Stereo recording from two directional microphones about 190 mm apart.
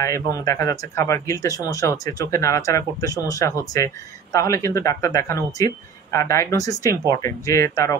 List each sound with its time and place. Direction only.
0.0 s speech: 15° left (ahead or behind)